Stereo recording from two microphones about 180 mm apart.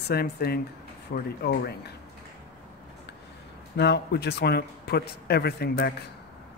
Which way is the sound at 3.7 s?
70° left (ahead or behind).